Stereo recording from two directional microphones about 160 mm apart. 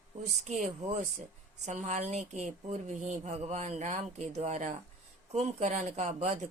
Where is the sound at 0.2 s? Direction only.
45° right (ahead or behind).